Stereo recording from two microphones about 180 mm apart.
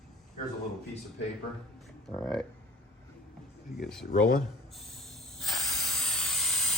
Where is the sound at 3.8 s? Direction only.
Centre (ahead or behind).